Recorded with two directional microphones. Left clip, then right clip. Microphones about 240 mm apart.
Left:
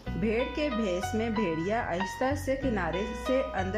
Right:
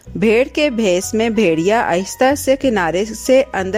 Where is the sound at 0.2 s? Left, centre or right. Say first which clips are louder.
Right 16 dB; right.